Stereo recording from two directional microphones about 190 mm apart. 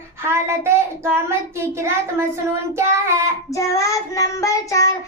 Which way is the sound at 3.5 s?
15° left (ahead or behind).